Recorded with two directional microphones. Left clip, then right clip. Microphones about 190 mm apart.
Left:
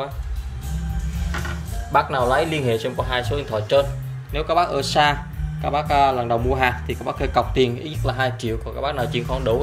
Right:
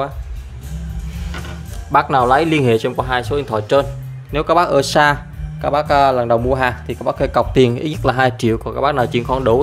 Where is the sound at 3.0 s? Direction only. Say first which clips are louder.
Right 5 dB; 40° right (ahead or behind).